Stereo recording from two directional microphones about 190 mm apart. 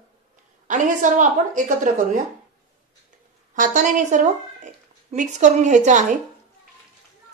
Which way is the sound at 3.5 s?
45° right (ahead or behind).